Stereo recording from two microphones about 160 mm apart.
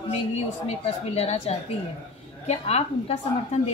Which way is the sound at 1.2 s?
40° left (ahead or behind).